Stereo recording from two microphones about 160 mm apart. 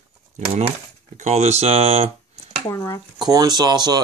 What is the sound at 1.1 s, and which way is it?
Speech, 45° right (ahead or behind).